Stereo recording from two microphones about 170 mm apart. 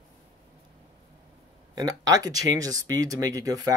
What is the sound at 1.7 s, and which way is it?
Speech, 20° right (ahead or behind).